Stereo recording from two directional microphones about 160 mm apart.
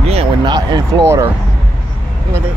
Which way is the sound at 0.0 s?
40° right (ahead or behind).